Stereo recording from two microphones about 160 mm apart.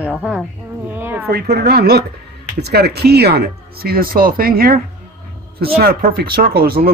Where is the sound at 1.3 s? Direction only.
80° right.